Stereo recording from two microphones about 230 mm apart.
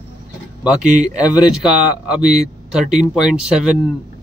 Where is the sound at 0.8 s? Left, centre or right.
Right.